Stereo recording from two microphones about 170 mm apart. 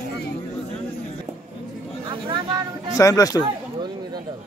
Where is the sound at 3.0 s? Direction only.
20° left (ahead or behind).